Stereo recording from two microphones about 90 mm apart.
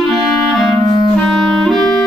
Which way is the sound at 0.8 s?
45° left (ahead or behind).